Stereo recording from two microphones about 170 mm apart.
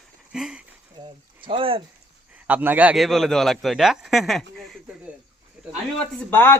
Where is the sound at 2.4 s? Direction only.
10° right (ahead or behind).